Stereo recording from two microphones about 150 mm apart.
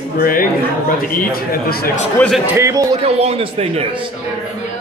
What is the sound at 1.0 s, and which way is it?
Speech, 85° left.